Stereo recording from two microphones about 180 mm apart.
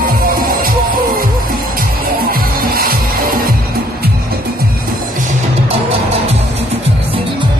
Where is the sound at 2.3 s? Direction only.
55° right (ahead or behind).